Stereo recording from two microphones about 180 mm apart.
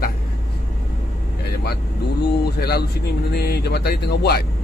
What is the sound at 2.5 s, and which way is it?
Speech, 60° left (ahead or behind).